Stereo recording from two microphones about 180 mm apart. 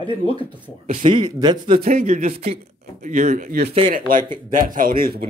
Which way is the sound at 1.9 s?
50° right (ahead or behind).